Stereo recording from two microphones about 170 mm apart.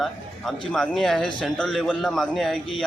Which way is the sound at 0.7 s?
5° left (ahead or behind).